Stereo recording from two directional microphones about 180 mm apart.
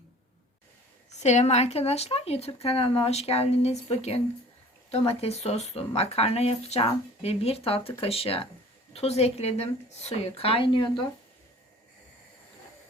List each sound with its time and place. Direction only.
1.2 s speech: 40° left (ahead or behind)